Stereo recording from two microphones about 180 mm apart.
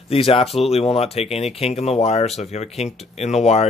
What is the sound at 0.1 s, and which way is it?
Speech, 30° left (ahead or behind).